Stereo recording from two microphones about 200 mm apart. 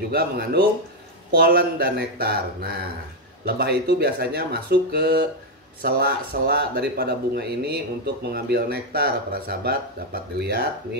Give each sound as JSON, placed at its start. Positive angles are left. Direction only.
{"t": 0.1, "sound": "speech", "side_deg": -50}